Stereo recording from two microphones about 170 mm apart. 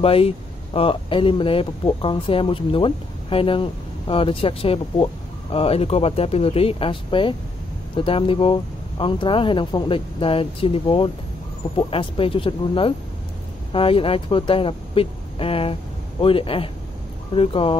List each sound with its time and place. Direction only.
0.0 s speech: 35° left (ahead or behind)